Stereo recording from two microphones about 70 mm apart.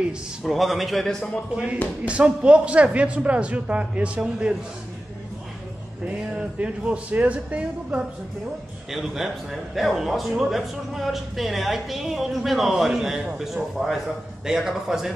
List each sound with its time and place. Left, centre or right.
0.4 s a man's voice: centre
2.0 s a man's voice: centre
6.3 s a man's voice: centre
8.9 s a man's voice: centre